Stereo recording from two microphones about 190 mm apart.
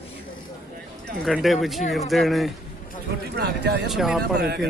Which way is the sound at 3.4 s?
60° right (ahead or behind).